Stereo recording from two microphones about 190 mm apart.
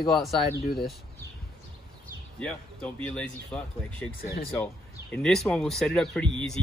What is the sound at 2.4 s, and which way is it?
Speech, 5° left (ahead or behind).